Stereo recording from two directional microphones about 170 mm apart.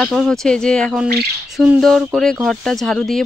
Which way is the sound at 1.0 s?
70° right (ahead or behind).